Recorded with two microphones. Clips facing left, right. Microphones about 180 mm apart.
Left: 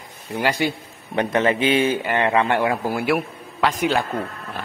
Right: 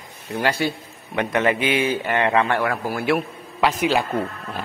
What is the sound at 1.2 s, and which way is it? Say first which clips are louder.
A man's voice: left 1 dB; 30° left (ahead or behind).